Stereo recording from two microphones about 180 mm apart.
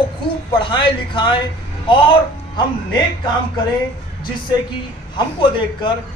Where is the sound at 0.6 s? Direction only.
25° left (ahead or behind).